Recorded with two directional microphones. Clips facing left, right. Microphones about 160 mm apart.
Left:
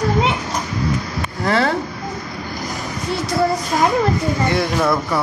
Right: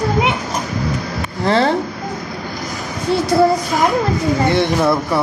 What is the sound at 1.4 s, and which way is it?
Speech, 30° right (ahead or behind).